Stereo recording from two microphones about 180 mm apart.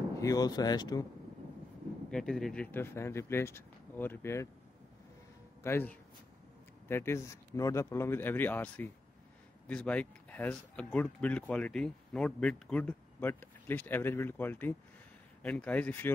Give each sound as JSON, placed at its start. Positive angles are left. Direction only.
{"t": 0.2, "sound": "speech", "side_deg": 20}
{"t": 2.0, "sound": "speech", "side_deg": 5}
{"t": 5.6, "sound": "speech", "side_deg": 15}